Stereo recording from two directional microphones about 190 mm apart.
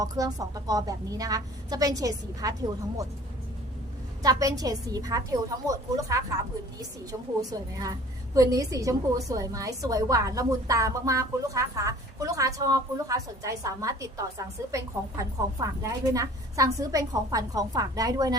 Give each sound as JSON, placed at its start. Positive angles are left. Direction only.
{"t": 0.0, "sound": "a woman's voice", "side_deg": -20}
{"t": 4.2, "sound": "a woman's voice", "side_deg": -20}